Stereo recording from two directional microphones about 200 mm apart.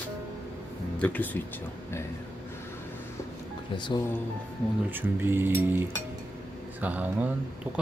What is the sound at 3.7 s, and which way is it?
Speech, 25° left (ahead or behind).